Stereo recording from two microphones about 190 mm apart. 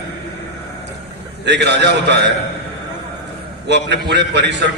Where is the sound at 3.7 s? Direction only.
65° right (ahead or behind).